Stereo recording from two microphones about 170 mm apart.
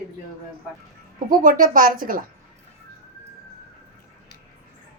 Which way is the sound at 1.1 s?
50° right (ahead or behind).